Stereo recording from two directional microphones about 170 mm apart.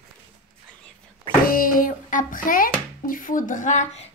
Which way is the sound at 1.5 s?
55° left (ahead or behind).